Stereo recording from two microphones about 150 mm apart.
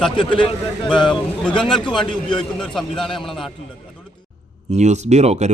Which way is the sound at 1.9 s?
30° left (ahead or behind).